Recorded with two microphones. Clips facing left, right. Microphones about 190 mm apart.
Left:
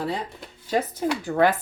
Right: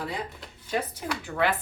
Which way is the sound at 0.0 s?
30° left (ahead or behind).